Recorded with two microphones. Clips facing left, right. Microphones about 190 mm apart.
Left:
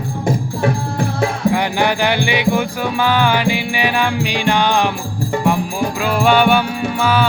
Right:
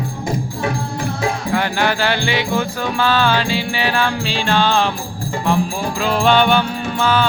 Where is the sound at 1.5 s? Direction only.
15° left (ahead or behind).